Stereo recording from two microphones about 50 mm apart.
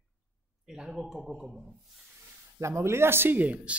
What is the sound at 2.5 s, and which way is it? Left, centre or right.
Speech, right.